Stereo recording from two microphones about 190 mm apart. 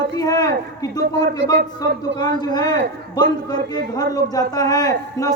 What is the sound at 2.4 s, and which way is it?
A man's voice, 20° left (ahead or behind).